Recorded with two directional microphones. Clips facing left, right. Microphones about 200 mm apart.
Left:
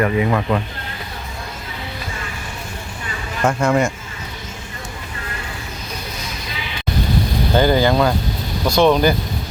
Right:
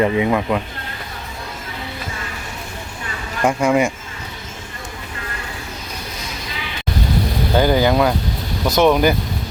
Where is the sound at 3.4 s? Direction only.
15° right (ahead or behind).